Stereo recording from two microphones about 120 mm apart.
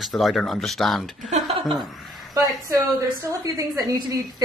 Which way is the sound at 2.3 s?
30° right (ahead or behind).